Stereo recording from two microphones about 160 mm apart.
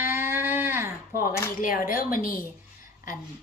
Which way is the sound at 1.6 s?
60° left (ahead or behind).